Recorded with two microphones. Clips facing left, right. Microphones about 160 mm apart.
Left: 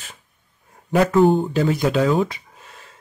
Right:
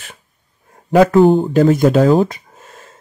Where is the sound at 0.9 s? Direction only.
75° right (ahead or behind).